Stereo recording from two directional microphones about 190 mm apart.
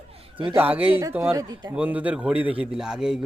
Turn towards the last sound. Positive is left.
turn(degrees=-5)  # may be behind; listen again after turning